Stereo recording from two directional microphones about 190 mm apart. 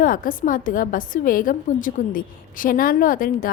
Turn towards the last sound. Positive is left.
turn(degrees=45)  # may be behind; listen again after turning